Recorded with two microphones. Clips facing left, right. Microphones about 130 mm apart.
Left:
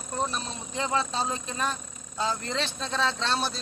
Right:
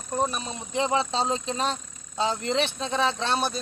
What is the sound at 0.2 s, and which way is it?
Speech, 15° right (ahead or behind).